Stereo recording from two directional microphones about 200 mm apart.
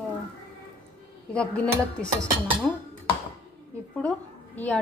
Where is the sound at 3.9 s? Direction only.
5° left (ahead or behind).